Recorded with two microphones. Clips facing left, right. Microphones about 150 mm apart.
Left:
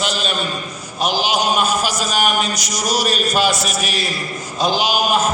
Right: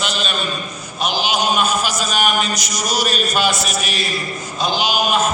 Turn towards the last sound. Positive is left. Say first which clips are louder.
# left 1 dB
turn(degrees=35)  # may be behind; listen again after turning